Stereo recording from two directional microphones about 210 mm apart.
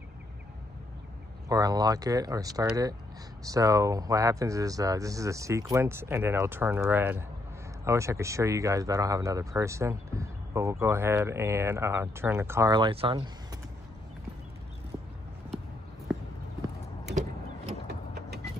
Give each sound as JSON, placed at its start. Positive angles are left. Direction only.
{"t": 1.5, "sound": "speech", "side_deg": -15}
{"t": 16.1, "sound": "clip-clop", "side_deg": 0}